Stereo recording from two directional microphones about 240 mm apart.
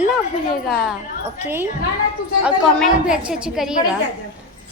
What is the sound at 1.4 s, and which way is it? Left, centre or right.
A woman's voice, centre.